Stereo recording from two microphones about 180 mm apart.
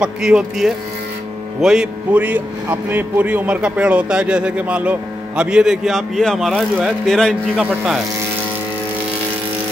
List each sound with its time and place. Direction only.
0.0 s speech: 5° right (ahead or behind)